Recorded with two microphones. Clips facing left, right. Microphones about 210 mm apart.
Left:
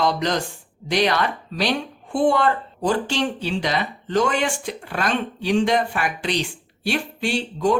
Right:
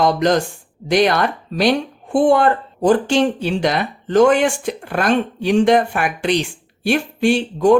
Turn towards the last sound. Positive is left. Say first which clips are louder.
# right 7 dB
turn(degrees=-50)  # may be behind; listen again after turning